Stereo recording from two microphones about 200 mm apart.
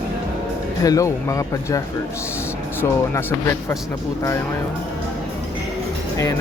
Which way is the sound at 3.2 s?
10° left (ahead or behind).